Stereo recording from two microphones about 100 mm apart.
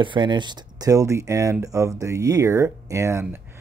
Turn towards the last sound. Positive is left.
turn(degrees=-30)  # may be behind; listen again after turning